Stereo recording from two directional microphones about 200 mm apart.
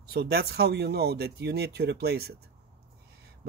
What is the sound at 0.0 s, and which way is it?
Speech, 50° right (ahead or behind).